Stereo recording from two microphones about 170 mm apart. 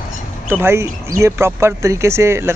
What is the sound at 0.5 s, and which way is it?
Speech, 15° right (ahead or behind).